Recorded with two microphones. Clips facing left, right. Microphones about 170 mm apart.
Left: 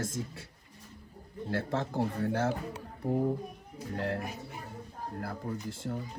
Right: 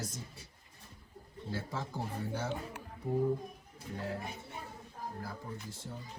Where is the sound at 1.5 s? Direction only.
70° left (ahead or behind).